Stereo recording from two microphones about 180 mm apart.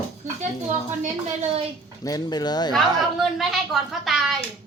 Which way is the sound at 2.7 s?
Centre (ahead or behind).